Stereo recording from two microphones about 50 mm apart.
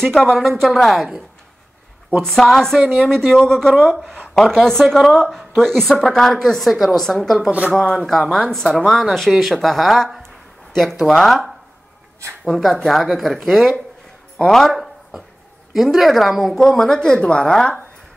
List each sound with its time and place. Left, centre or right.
0.0 s speech: centre
2.2 s a woman's voice: centre
2.8 s a woman's voice: right
3.1 s a woman's voice: centre